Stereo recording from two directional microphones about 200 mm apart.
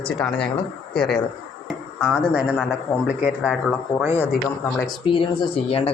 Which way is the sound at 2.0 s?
5° right (ahead or behind).